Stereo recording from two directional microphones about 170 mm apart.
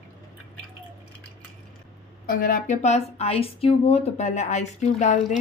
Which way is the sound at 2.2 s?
55° left (ahead or behind).